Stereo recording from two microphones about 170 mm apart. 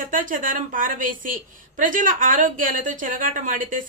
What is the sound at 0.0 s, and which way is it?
A woman's voice, 55° right (ahead or behind).